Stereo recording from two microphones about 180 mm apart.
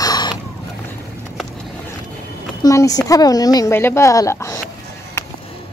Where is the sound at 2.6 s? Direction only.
20° left (ahead or behind).